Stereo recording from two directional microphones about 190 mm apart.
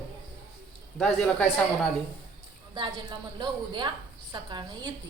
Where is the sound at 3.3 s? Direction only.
25° right (ahead or behind).